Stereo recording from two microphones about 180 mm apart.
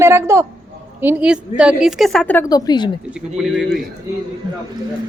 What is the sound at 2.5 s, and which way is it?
Speech, 20° left (ahead or behind).